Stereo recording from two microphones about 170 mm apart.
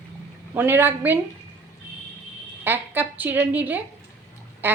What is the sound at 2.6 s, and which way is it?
A woman's voice, 10° right (ahead or behind).